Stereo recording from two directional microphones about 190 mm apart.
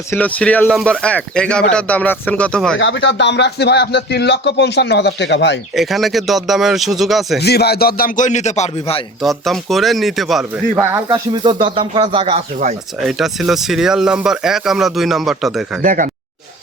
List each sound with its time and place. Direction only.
0.1 s speech: 10° left (ahead or behind)
2.7 s speech: 75° left (ahead or behind)
5.7 s speech: centre (ahead or behind)
7.3 s speech: 60° left (ahead or behind); by 9.0 s 35° left (ahead or behind)
9.2 s speech: centre (ahead or behind)
10.8 s speech: 20° right (ahead or behind)
13.1 s speech: centre (ahead or behind)
15.8 s speech: 45° right (ahead or behind)